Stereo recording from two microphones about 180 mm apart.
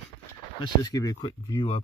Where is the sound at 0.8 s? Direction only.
20° left (ahead or behind).